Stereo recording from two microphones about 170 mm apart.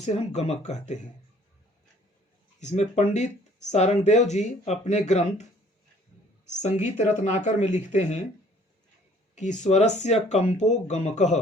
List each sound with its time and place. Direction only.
0.0 s speech: 40° left (ahead or behind)
2.6 s speech: 40° left (ahead or behind)
6.6 s speech: 45° left (ahead or behind)
9.3 s speech: 45° left (ahead or behind)